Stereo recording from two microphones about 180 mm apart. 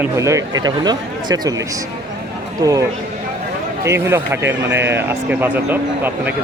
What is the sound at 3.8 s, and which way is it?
Speech, 15° right (ahead or behind).